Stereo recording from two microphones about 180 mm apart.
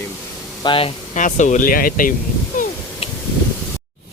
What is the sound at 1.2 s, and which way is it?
Speech, 45° left (ahead or behind).